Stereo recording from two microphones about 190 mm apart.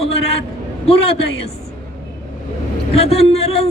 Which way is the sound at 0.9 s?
30° left (ahead or behind).